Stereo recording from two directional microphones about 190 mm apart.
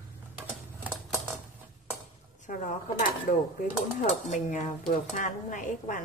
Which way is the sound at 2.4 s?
45° left (ahead or behind).